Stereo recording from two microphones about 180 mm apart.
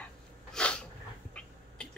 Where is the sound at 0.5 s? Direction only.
5° left (ahead or behind).